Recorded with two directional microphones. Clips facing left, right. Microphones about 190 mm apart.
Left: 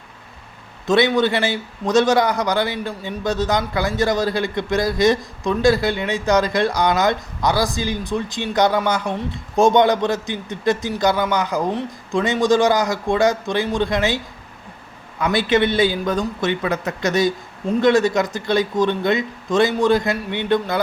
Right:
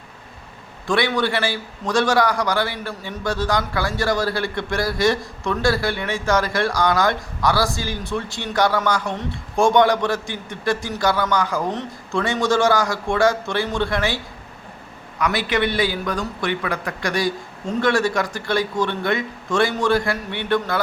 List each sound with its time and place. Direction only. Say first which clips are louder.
0.9 s a man's voice: left 4 dB; 20° left (ahead or behind)
15.2 s a man's voice: left 4 dB; 25° left (ahead or behind)